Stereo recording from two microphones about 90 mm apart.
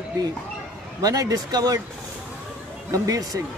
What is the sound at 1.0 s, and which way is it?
Speech, 40° right (ahead or behind).